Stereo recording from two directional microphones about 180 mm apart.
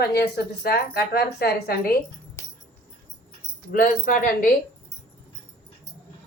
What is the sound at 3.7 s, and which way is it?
Speech, 50° left (ahead or behind).